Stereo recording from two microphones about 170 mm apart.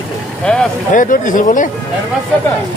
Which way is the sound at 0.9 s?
50° left (ahead or behind).